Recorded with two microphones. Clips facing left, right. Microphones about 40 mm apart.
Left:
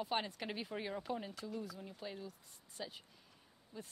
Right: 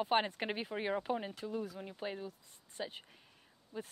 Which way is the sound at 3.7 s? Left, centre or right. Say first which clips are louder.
Right 7 dB; centre.